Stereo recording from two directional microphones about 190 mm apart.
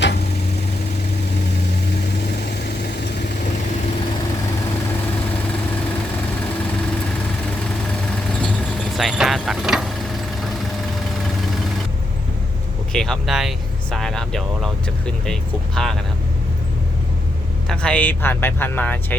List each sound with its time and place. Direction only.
2.4 s vehicle: 55° left (ahead or behind)
9.0 s vehicle: centre (ahead or behind)
12.9 s vehicle: centre (ahead or behind)
17.7 s speech: 5° left (ahead or behind)